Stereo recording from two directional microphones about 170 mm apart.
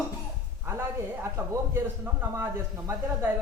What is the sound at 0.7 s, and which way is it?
Speech, 15° right (ahead or behind).